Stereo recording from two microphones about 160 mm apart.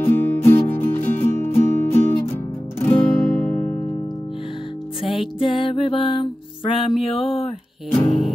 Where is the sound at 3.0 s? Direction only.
10° left (ahead or behind).